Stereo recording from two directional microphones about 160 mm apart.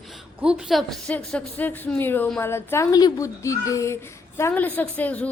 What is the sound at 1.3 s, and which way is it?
A child's voice, 10° left (ahead or behind).